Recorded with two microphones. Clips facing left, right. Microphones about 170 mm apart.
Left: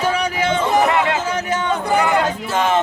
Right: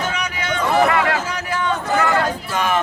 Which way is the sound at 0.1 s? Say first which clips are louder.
Left 6 dB; 30° left (ahead or behind).